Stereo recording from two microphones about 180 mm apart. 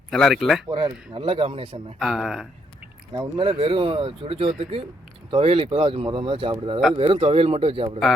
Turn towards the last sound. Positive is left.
turn(degrees=-30)  # may be behind; listen again after turning